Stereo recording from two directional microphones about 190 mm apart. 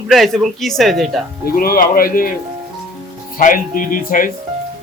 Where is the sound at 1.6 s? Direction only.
50° left (ahead or behind).